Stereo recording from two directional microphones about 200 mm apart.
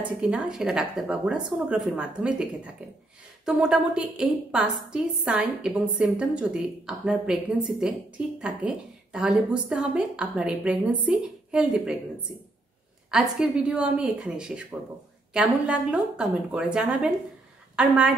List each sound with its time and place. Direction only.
0.2 s a woman's voice: 5° right (ahead or behind)
13.1 s a woman's voice: centre (ahead or behind)